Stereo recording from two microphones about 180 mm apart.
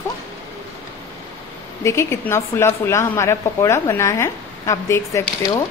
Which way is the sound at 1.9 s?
15° left (ahead or behind).